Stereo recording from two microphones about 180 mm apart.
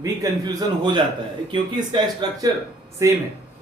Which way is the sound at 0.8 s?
25° right (ahead or behind).